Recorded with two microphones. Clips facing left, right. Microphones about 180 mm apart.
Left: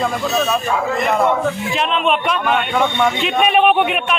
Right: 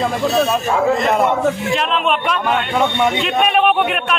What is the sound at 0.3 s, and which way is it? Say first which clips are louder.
Speech: right 3 dB; 25° right (ahead or behind).